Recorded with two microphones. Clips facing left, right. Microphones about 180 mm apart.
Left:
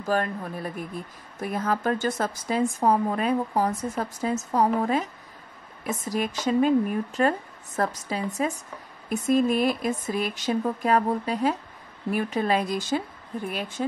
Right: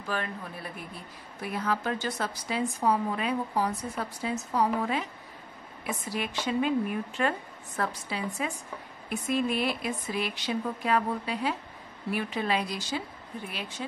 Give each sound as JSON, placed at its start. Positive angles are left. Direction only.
{"t": 0.0, "sound": "speech", "side_deg": 45}